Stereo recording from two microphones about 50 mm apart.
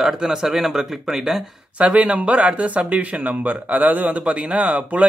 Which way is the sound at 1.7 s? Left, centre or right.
Right.